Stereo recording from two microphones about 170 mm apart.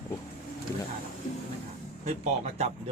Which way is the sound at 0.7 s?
15° left (ahead or behind).